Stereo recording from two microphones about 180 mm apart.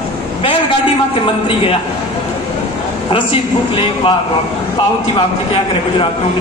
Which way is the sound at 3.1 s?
30° left (ahead or behind).